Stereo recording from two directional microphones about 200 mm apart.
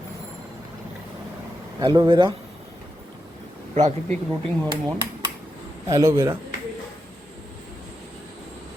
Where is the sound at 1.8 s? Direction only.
20° right (ahead or behind).